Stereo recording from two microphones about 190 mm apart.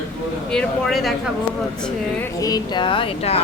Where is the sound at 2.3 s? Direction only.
20° left (ahead or behind).